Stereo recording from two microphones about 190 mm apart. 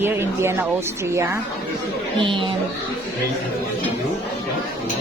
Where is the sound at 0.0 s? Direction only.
10° right (ahead or behind).